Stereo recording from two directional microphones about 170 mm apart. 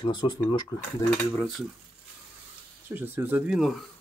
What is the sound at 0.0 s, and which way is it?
Speech, 25° left (ahead or behind).